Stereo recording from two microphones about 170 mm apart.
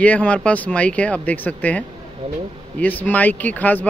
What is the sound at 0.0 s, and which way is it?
A man's voice, 10° left (ahead or behind).